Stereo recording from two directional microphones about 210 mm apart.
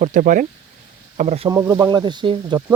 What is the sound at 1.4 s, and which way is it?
Speech, 15° right (ahead or behind).